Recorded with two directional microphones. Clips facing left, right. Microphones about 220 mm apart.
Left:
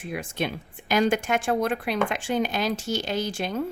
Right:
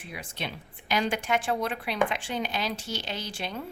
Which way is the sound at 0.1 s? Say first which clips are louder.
Left 8 dB; 50° left (ahead or behind).